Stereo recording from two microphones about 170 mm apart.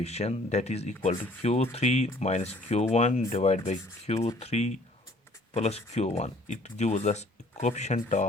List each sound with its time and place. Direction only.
0.0 s speech: 40° left (ahead or behind)